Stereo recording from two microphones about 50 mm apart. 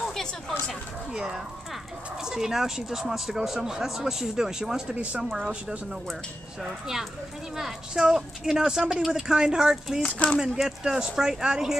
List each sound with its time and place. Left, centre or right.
0.0 s a sound: centre
1.1 s speech: centre
4.9 s speech: right
5.2 s speech: centre
10.0 s speech: left
10.4 s speech: centre